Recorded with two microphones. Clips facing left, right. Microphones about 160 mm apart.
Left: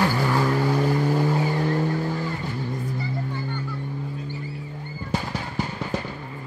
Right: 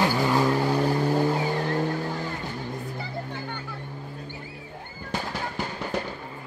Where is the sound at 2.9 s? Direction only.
60° right (ahead or behind).